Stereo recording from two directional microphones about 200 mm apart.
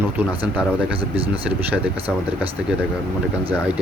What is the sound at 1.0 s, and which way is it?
Speech, 25° right (ahead or behind).